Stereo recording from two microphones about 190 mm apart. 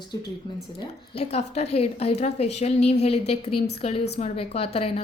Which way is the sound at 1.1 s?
35° left (ahead or behind).